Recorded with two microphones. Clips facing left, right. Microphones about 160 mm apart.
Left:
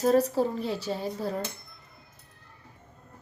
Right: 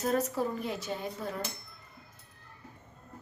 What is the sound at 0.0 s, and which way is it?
Speech, 35° left (ahead or behind).